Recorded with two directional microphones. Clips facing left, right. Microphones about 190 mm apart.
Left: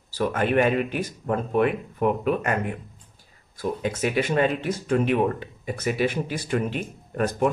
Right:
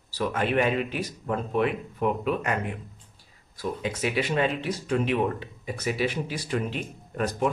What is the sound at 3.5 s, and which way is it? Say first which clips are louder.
Speech: left 3 dB; 50° left (ahead or behind).